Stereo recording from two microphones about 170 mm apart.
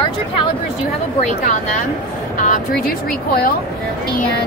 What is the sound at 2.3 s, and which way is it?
Speech, 50° left (ahead or behind).